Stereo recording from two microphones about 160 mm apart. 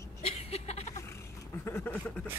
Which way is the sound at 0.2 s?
40° left (ahead or behind).